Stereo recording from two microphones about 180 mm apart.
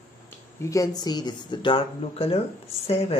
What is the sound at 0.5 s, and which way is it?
Speech, 20° left (ahead or behind).